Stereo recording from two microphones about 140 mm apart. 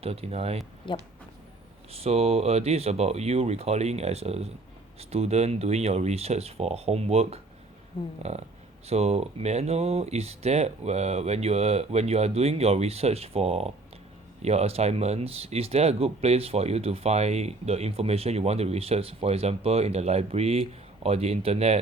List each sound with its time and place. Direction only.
0.0 s speech: 45° right (ahead or behind)
0.9 s speech: 35° left (ahead or behind)
1.9 s speech: 45° right (ahead or behind)
7.9 s speech: 40° left (ahead or behind)
8.9 s speech: 50° right (ahead or behind)